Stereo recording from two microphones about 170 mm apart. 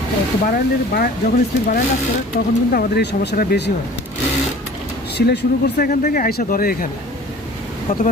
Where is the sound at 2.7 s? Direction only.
75° left (ahead or behind).